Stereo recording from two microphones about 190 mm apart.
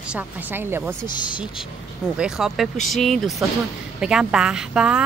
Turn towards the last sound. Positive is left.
turn(degrees=-5)  # may be behind; listen again after turning